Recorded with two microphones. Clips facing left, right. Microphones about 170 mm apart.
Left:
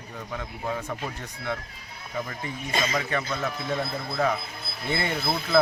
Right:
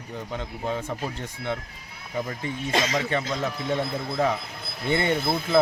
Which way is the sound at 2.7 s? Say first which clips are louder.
Right 3 dB; 90° right.